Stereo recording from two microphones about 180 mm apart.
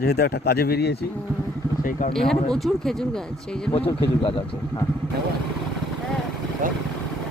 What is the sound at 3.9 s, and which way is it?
Speech, 30° left (ahead or behind).